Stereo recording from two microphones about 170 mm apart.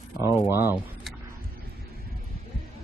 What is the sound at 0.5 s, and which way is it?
Speech, 15° right (ahead or behind).